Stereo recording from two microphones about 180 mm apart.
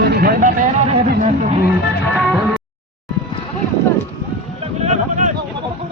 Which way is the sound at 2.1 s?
Centre (ahead or behind).